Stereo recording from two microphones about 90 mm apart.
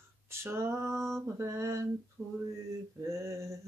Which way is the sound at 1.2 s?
35° right (ahead or behind).